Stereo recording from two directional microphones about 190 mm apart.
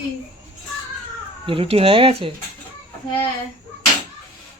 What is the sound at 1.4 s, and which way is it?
Speech, 30° right (ahead or behind).